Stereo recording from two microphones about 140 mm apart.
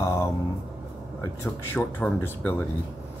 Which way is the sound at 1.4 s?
15° left (ahead or behind).